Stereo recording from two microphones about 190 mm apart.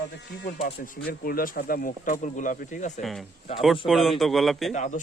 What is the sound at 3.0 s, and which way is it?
Speech, centre (ahead or behind).